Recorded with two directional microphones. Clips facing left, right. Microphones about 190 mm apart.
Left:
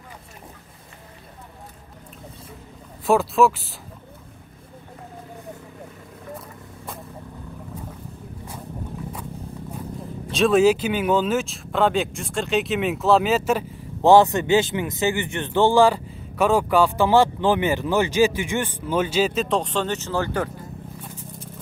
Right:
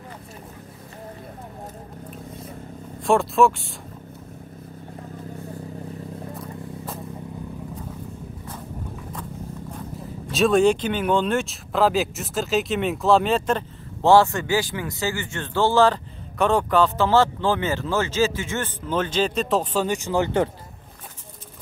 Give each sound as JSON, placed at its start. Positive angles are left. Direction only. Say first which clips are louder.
{"t": 3.1, "sound": "speech", "louder": "even", "side_deg": 0}
{"t": 10.3, "sound": "speech", "louder": "left 1 dB", "side_deg": 0}